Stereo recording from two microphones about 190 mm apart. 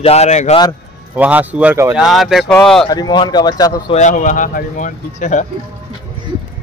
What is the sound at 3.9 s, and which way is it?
Speech, 40° left (ahead or behind).